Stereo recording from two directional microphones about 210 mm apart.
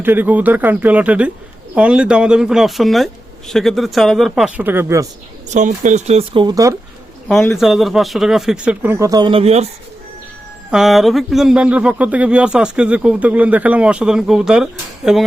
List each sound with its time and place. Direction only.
0.0 s speech: 10° right (ahead or behind)
5.5 s speech: 35° right (ahead or behind); by 6.7 s 15° right (ahead or behind)
7.6 s speech: centre (ahead or behind); by 9.6 s 30° right (ahead or behind)
10.7 s speech: centre (ahead or behind)